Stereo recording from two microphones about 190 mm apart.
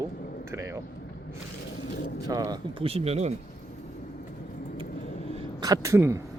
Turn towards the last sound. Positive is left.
turn(degrees=-15)  # may be behind; listen again after turning